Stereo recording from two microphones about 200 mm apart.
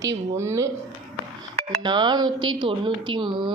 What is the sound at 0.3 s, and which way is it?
Speech, 15° right (ahead or behind).